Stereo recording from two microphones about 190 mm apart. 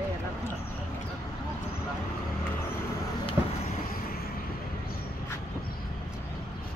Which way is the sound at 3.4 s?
15° right (ahead or behind).